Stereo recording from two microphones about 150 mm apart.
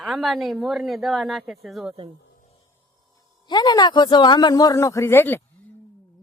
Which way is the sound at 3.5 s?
30° left (ahead or behind).